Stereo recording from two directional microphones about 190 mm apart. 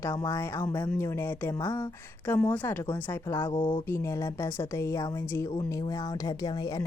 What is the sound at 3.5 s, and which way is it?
Speech, 25° left (ahead or behind).